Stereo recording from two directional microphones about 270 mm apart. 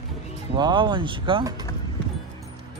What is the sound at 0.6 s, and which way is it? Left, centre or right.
Speech, centre.